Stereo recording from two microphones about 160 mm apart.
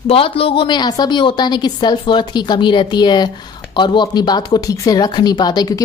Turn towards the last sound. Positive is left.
turn(degrees=25)  # may be behind; listen again after turning